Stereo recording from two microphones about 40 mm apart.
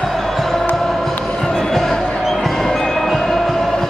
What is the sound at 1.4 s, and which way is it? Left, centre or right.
Music, centre.